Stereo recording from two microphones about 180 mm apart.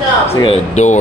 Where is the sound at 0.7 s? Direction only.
40° left (ahead or behind).